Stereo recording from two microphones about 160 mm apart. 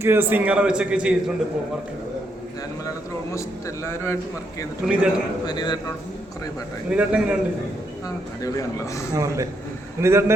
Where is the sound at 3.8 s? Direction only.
15° left (ahead or behind).